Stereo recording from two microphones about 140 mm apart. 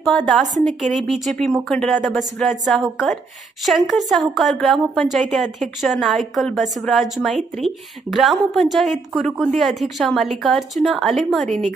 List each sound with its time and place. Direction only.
0.0 s speech: centre (ahead or behind)
11.4 s a woman's voice: 55° right (ahead or behind)